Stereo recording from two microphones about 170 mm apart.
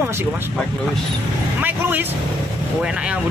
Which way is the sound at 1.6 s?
10° right (ahead or behind).